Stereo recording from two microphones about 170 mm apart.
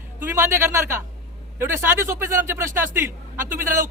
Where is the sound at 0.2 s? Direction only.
15° right (ahead or behind).